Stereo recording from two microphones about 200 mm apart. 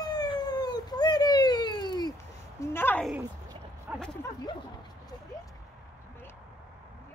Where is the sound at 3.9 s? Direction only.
10° right (ahead or behind).